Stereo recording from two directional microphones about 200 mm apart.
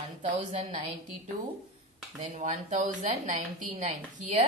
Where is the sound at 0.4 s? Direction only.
40° right (ahead or behind).